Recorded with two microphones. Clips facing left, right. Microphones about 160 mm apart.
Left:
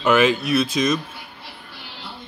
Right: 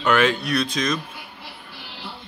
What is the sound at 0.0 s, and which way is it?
Speech, 5° left (ahead or behind).